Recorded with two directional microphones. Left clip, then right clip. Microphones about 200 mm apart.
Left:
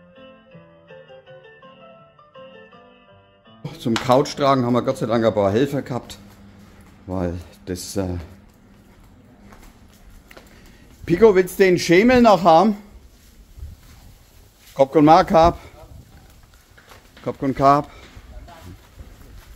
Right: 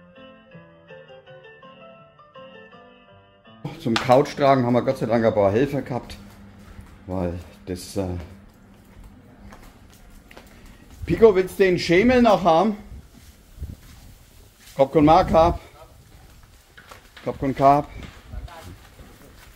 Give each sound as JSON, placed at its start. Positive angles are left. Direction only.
{"t": 3.6, "sound": "speech", "side_deg": 25}
{"t": 4.0, "sound": "a man's voice", "side_deg": 15}
{"t": 11.1, "sound": "a man's voice", "side_deg": 35}
{"t": 14.8, "sound": "a man's voice", "side_deg": 35}
{"t": 17.2, "sound": "speech", "side_deg": 25}